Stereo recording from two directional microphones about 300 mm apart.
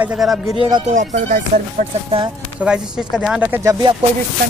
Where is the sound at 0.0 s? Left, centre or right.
Centre.